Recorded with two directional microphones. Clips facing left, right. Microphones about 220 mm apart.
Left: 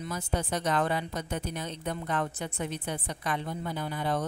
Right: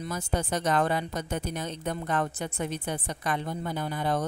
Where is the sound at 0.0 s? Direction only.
45° right (ahead or behind).